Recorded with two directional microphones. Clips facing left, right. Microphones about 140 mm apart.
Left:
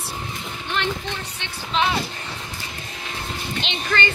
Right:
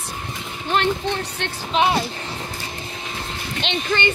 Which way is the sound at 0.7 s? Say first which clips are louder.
Right 6 dB; 40° right (ahead or behind).